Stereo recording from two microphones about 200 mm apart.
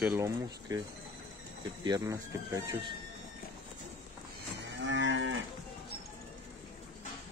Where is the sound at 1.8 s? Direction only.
15° right (ahead or behind).